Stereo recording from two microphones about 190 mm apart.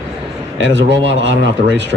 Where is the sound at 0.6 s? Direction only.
70° right (ahead or behind).